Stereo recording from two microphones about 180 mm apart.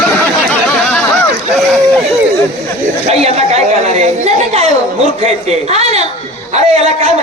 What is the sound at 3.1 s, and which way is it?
A man's voice, 35° right (ahead or behind).